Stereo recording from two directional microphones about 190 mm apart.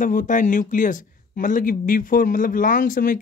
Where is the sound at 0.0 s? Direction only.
45° left (ahead or behind).